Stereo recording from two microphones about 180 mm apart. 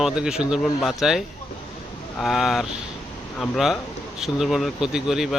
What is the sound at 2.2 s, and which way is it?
Speech, centre (ahead or behind).